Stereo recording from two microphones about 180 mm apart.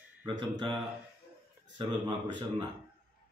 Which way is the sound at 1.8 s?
25° right (ahead or behind).